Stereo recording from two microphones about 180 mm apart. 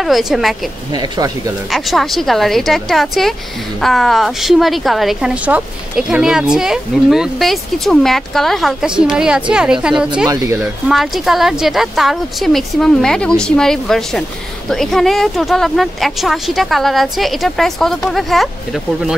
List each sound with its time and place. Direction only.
0.0 s a woman's voice: centre (ahead or behind)
0.9 s speech: 20° right (ahead or behind)
1.7 s a woman's voice: centre (ahead or behind)
10.2 s speech: 20° right (ahead or behind)
10.9 s a woman's voice: centre (ahead or behind)